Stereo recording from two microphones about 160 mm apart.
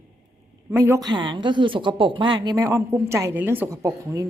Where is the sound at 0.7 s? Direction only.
20° right (ahead or behind).